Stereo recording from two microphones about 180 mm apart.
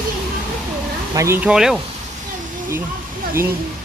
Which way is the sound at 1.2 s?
15° right (ahead or behind).